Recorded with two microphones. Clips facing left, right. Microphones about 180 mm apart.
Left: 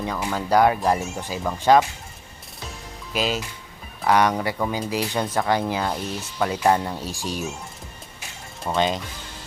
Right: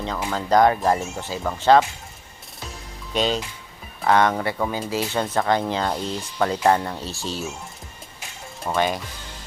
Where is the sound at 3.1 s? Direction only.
5° left (ahead or behind).